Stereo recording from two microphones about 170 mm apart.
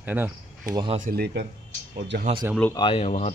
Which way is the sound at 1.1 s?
75° right (ahead or behind).